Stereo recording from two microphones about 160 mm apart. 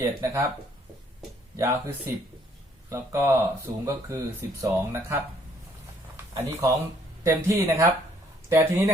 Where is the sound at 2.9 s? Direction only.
20° right (ahead or behind).